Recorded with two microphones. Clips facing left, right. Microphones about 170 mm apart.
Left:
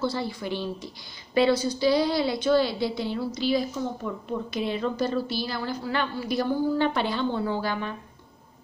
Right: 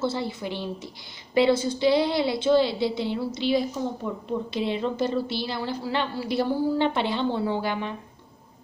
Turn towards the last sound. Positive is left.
turn(degrees=-20)  # may be behind; listen again after turning